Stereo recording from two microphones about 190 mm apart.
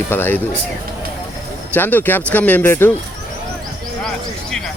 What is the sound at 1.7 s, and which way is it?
Speech, 10° left (ahead or behind).